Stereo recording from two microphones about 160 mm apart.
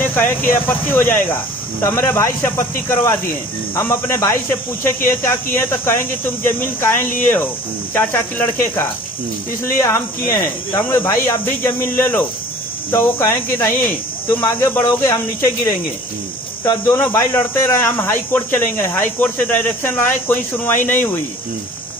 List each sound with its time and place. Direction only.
0.0 s speech: 10° left (ahead or behind)
16.6 s speech: 15° left (ahead or behind)